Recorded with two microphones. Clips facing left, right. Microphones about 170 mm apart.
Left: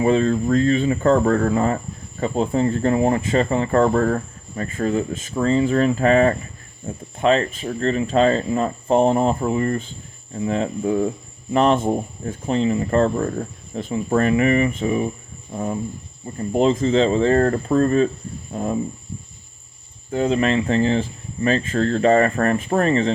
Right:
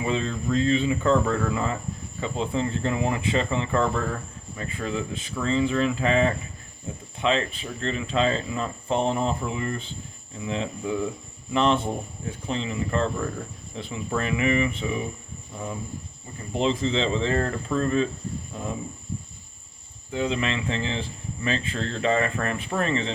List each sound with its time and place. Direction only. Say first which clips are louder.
0.0 s speech: left 9 dB; 50° left (ahead or behind)
20.1 s speech: left 7 dB; 45° left (ahead or behind)